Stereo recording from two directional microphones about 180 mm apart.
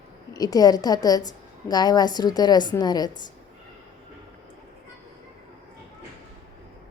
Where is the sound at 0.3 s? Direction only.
20° left (ahead or behind).